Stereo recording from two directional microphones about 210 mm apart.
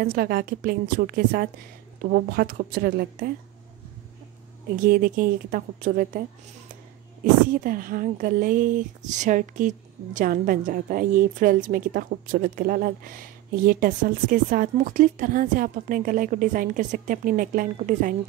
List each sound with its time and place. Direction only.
0.0 s a woman's voice: 45° right (ahead or behind)
4.8 s speech: 40° right (ahead or behind)
7.5 s speech: 45° right (ahead or behind)